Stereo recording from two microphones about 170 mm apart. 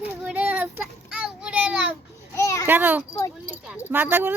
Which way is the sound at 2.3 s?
20° left (ahead or behind).